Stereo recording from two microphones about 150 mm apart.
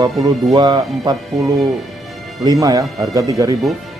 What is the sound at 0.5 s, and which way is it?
Speech, 30° right (ahead or behind).